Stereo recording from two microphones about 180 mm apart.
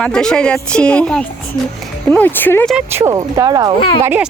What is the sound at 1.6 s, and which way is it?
Speech, 25° left (ahead or behind).